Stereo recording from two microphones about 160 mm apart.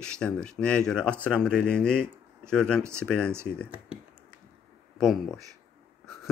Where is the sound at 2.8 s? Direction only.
15° right (ahead or behind).